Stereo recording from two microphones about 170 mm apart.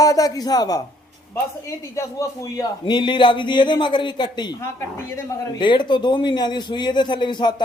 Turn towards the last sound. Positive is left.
turn(degrees=25)  # may be behind; listen again after turning